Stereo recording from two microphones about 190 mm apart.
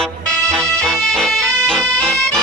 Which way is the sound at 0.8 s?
5° left (ahead or behind).